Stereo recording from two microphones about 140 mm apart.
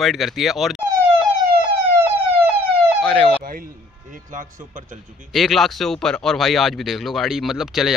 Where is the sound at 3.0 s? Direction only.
5° left (ahead or behind).